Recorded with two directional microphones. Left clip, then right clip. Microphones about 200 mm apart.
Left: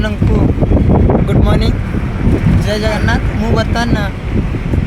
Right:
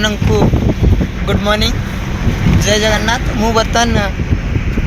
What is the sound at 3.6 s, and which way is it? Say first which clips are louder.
Speech: right 4 dB; 25° right (ahead or behind).